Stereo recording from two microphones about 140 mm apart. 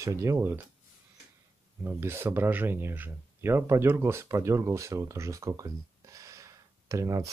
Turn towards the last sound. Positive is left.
turn(degrees=-25)  # may be behind; listen again after turning